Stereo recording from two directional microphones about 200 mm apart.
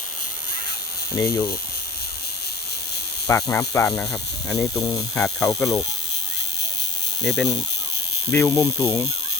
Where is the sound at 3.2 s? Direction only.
10° left (ahead or behind).